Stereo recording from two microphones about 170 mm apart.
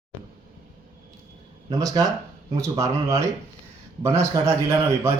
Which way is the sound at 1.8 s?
20° right (ahead or behind).